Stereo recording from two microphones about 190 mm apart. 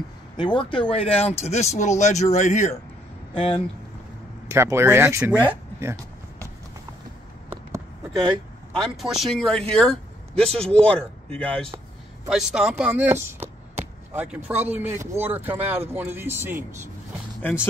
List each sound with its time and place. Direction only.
0.4 s speech: 25° left (ahead or behind)
4.5 s speech: 15° right (ahead or behind)
5.5 s a sound: 15° right (ahead or behind)
8.9 s speech: centre (ahead or behind)
17.4 s speech: 10° left (ahead or behind)